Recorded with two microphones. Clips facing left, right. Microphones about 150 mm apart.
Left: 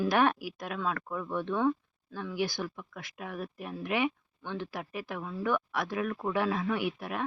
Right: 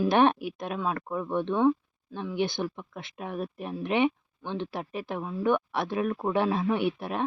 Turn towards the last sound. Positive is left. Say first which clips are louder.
# right 5 dB
turn(degrees=-25)  # may be behind; listen again after turning